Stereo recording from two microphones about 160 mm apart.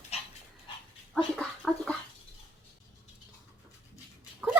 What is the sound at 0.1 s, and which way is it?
Dog, 40° left (ahead or behind).